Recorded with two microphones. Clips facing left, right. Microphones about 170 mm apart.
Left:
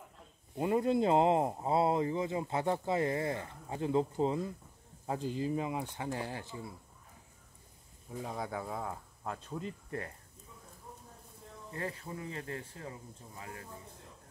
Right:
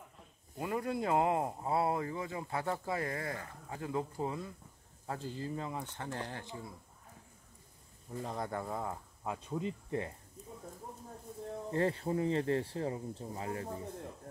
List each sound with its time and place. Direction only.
0.6 s speech: 25° left (ahead or behind); by 6.7 s 10° left (ahead or behind)
8.1 s speech: 5° left (ahead or behind); by 10.1 s 15° right (ahead or behind)
11.7 s speech: 30° right (ahead or behind)